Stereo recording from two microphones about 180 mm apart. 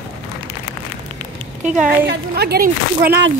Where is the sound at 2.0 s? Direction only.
60° right (ahead or behind).